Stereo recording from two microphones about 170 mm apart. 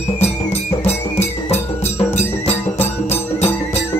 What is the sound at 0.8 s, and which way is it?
Music, 40° left (ahead or behind).